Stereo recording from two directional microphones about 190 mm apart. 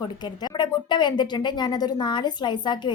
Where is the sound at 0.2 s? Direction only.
20° left (ahead or behind).